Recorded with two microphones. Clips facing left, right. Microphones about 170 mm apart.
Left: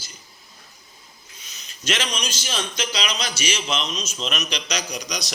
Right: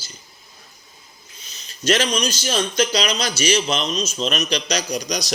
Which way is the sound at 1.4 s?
35° right (ahead or behind).